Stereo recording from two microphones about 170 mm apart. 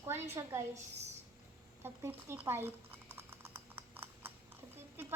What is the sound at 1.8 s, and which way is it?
Typing, 15° right (ahead or behind).